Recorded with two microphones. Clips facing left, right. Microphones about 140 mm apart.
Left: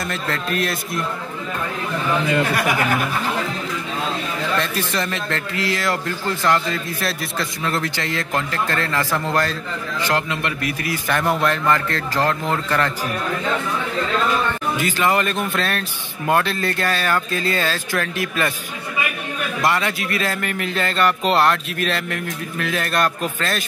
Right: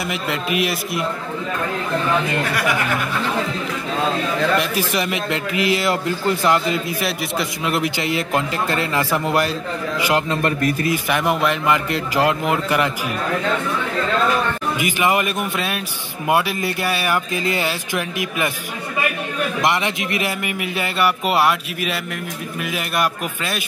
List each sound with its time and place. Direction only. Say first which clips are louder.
0.1 s a man's voice: right 2 dB; 5° right (ahead or behind)
4.6 s speech: right 2 dB; 10° right (ahead or behind)
7.0 s a man's voice: right 2 dB; 5° right (ahead or behind)
7.6 s speech: right 2 dB; 15° right (ahead or behind)
10.3 s speech: right 5 dB; 40° right (ahead or behind)
11.1 s speech: left 2 dB; 5° right (ahead or behind)
14.8 s speech: right 1 dB; 15° right (ahead or behind)
19.6 s speech: left 1 dB; 20° right (ahead or behind)